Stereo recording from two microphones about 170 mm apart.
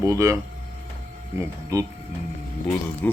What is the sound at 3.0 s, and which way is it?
Music, 10° left (ahead or behind).